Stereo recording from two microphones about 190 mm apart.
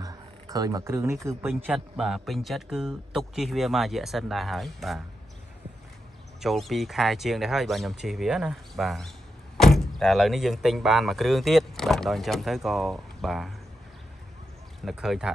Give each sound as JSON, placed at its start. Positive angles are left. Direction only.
{"t": 0.0, "sound": "a sound", "side_deg": -20}
{"t": 1.5, "sound": "speech", "side_deg": 0}
{"t": 6.4, "sound": "speech", "side_deg": 0}
{"t": 14.9, "sound": "speech", "side_deg": -5}